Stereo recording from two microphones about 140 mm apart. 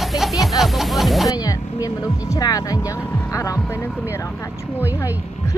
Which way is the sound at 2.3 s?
25° left (ahead or behind).